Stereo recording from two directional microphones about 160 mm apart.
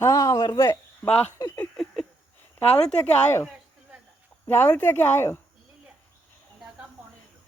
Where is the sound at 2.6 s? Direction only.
40° left (ahead or behind).